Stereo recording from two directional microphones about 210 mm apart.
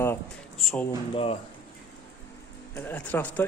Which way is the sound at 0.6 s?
Centre (ahead or behind).